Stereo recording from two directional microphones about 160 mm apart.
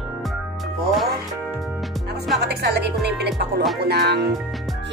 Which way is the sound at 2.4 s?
90° right.